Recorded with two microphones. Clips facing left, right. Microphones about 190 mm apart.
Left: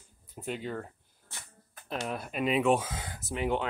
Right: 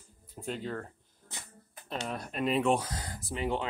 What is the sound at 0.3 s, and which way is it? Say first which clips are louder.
Speech: left 1 dB; centre (ahead or behind).